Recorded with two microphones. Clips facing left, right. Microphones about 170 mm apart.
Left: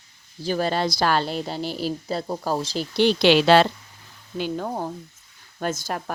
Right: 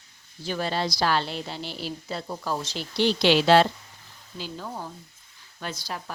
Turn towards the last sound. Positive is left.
turn(degrees=50)  # may be behind; listen again after turning